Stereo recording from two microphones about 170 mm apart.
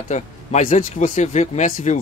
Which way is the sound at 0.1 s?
45° left (ahead or behind).